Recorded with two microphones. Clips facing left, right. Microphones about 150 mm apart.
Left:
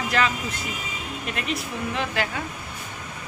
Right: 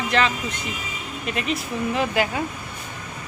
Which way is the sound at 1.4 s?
Centre (ahead or behind).